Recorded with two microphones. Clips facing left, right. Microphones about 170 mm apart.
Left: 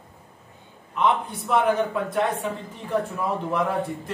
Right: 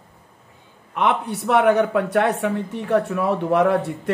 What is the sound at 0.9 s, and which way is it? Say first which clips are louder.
Speech: right 2 dB; 75° right (ahead or behind).